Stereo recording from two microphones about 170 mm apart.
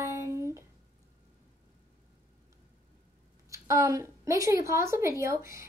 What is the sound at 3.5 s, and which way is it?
A woman's voice, 20° right (ahead or behind).